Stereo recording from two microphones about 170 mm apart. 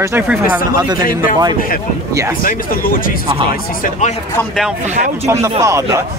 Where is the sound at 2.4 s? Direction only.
55° left (ahead or behind).